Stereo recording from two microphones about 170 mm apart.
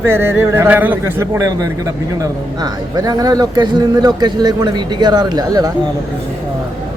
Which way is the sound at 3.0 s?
20° right (ahead or behind).